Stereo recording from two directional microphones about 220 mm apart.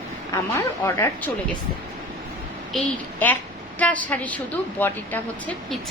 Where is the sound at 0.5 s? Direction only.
15° left (ahead or behind).